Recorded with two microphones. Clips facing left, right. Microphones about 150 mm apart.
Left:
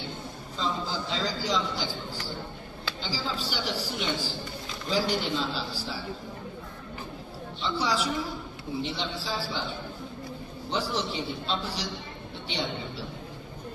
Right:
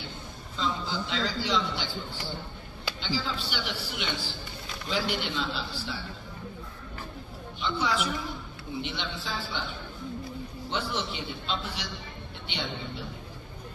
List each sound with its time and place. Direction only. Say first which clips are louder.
0.6 s a man's voice: even; 35° left (ahead or behind)
3.0 s a man's voice: right 1 dB; 40° left (ahead or behind)
7.6 s a man's voice: left 1 dB; 35° left (ahead or behind)
10.7 s a man's voice: left 3 dB; 35° left (ahead or behind)